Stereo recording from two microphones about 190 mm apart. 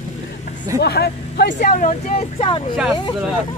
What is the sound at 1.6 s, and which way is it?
A woman's voice, 40° left (ahead or behind).